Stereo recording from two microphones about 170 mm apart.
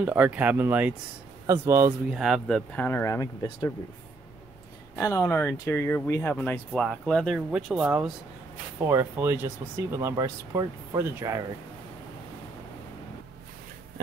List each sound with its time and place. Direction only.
0.0 s speech: 10° right (ahead or behind)
2.0 s speech: 5° right (ahead or behind); by 3.7 s 20° left (ahead or behind)
4.9 s speech: 15° left (ahead or behind); by 11.4 s 15° right (ahead or behind)